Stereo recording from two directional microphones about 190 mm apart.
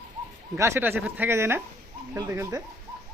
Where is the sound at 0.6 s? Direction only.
10° right (ahead or behind).